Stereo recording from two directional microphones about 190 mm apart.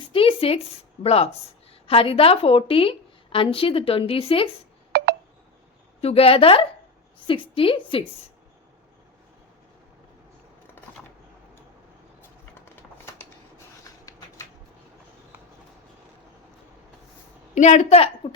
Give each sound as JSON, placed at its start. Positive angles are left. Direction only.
{"t": 0.1, "sound": "a sound", "side_deg": 30}
{"t": 1.0, "sound": "a woman's voice", "side_deg": 30}
{"t": 4.9, "sound": "telephone dialing", "side_deg": -55}
{"t": 6.0, "sound": "a woman's voice", "side_deg": 30}
{"t": 12.6, "sound": "a sound", "side_deg": 10}
{"t": 17.5, "sound": "a woman's voice", "side_deg": 40}